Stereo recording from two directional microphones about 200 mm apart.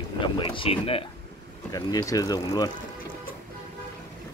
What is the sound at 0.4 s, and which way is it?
Speech, 25° left (ahead or behind).